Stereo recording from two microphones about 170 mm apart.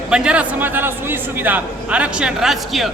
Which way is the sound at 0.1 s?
5° right (ahead or behind).